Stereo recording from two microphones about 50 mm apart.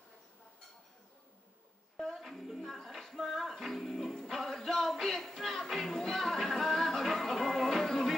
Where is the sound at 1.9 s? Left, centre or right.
Centre.